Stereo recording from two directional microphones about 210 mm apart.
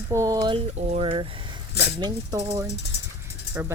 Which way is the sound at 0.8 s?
30° right (ahead or behind).